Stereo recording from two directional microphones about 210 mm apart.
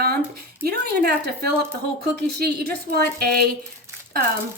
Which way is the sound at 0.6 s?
50° right (ahead or behind).